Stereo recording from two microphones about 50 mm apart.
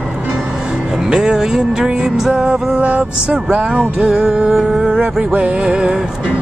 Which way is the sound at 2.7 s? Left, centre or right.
Right.